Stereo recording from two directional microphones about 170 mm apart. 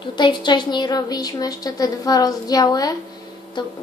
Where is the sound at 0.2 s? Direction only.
25° left (ahead or behind).